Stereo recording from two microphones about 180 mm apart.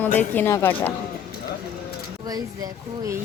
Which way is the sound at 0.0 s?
10° left (ahead or behind).